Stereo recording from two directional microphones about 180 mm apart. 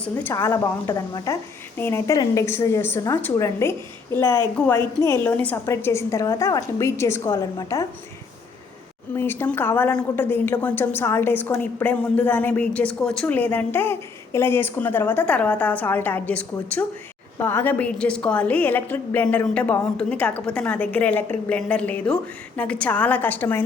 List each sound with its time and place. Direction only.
0.0 s a woman's voice: 10° left (ahead or behind)
9.1 s a woman's voice: 10° left (ahead or behind)